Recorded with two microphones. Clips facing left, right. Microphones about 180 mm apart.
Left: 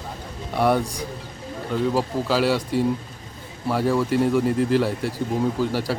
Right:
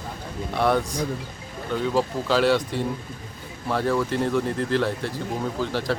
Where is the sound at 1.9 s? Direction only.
5° left (ahead or behind).